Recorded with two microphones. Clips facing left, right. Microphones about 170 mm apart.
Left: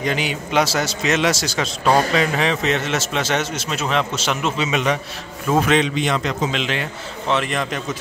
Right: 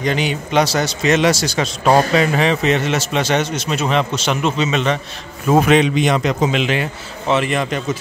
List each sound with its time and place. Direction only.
0.0 s a man's voice: 5° left (ahead or behind)
5.5 s a man's voice: 10° right (ahead or behind)